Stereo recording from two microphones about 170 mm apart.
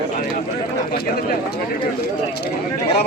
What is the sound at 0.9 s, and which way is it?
Speech, 60° left (ahead or behind).